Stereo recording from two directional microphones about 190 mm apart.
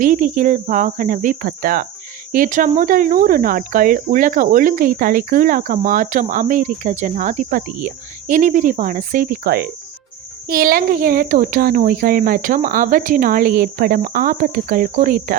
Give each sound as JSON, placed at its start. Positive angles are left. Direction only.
{"t": 0.0, "sound": "speech", "side_deg": -45}